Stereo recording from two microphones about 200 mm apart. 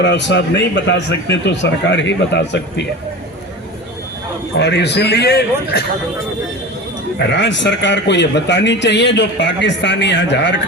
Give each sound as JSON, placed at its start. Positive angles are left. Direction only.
{"t": 0.0, "sound": "a man's voice", "side_deg": 60}
{"t": 4.5, "sound": "a man's voice", "side_deg": 60}
{"t": 7.2, "sound": "a man's voice", "side_deg": 60}